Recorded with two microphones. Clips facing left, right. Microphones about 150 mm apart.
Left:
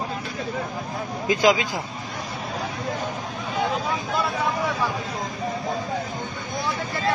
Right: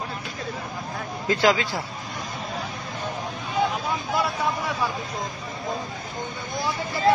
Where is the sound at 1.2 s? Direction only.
15° left (ahead or behind).